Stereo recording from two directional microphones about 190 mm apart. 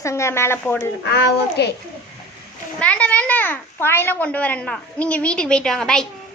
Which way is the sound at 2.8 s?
5° left (ahead or behind).